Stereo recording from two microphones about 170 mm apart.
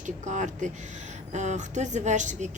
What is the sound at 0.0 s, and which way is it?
Speech, 45° right (ahead or behind).